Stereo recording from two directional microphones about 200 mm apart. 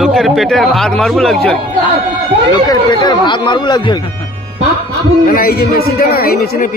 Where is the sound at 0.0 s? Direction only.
Centre (ahead or behind).